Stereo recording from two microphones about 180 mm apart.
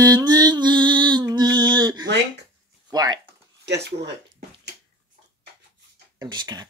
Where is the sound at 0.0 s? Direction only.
20° right (ahead or behind).